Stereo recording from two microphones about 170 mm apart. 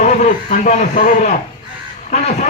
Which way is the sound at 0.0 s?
45° left (ahead or behind).